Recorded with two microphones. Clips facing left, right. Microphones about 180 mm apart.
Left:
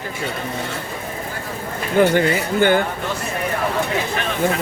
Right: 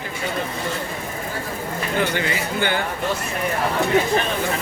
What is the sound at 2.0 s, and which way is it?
Speech, 45° left (ahead or behind).